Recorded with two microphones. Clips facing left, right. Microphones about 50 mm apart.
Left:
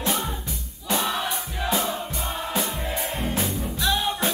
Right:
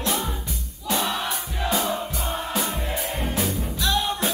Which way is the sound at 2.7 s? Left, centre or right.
Centre.